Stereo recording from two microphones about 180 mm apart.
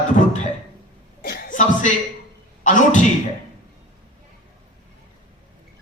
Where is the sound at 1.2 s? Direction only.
55° left (ahead or behind).